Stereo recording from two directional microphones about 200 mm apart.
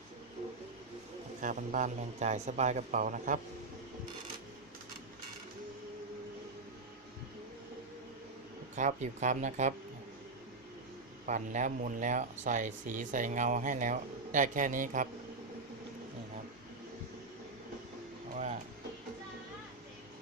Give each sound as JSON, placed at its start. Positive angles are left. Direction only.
{"t": 1.4, "sound": "speech", "side_deg": -40}
{"t": 8.7, "sound": "speech", "side_deg": -35}
{"t": 11.3, "sound": "speech", "side_deg": -40}